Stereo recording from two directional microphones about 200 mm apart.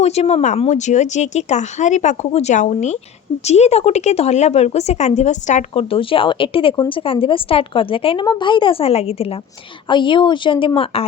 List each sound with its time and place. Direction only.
0.0 s speech: 35° left (ahead or behind)